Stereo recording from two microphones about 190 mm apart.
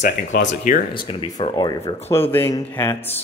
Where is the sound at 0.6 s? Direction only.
45° left (ahead or behind).